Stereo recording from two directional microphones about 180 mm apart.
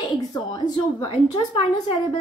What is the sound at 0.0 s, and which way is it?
A woman's voice, 20° left (ahead or behind).